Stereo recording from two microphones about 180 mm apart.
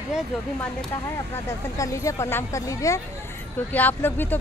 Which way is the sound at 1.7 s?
15° left (ahead or behind).